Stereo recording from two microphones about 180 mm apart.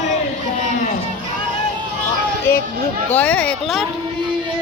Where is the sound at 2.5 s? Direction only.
15° left (ahead or behind).